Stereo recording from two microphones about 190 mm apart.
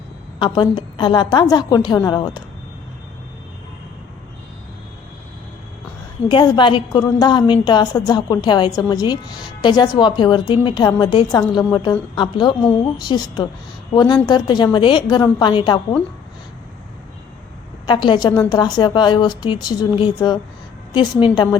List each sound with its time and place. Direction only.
0.3 s a woman's voice: 25° left (ahead or behind)
6.2 s a woman's voice: 25° left (ahead or behind)
17.8 s a woman's voice: 25° left (ahead or behind)